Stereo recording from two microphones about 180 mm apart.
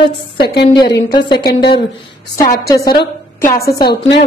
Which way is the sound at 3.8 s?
75° left (ahead or behind).